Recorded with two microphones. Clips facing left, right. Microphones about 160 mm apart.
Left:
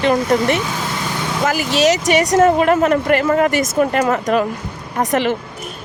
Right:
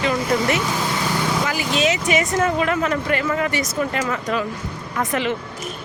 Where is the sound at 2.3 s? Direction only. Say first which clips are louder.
Left 7 dB; 45° left (ahead or behind).